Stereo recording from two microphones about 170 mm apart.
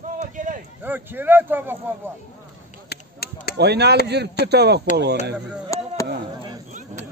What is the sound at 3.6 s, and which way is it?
A man's voice, 75° right (ahead or behind).